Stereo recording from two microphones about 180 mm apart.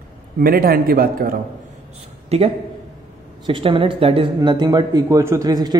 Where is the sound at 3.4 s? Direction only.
30° right (ahead or behind).